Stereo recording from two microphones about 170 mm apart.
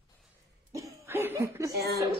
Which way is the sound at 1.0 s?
15° right (ahead or behind).